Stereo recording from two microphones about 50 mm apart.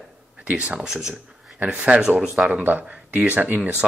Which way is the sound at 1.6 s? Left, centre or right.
Right.